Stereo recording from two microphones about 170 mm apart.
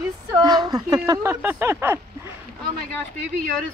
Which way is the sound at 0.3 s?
20° right (ahead or behind).